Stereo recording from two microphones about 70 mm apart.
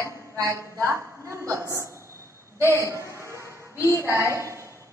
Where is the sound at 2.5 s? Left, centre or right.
Right.